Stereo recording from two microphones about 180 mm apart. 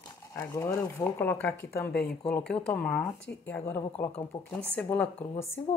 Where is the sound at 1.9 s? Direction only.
60° left (ahead or behind).